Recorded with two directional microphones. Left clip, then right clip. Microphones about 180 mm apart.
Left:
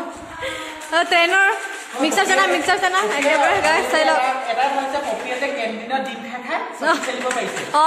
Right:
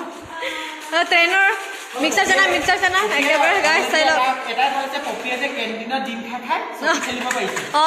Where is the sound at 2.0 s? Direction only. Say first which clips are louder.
Right 1 dB; 20° left (ahead or behind).